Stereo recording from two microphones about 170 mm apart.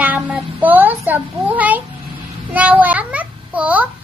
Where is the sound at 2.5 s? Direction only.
10° right (ahead or behind).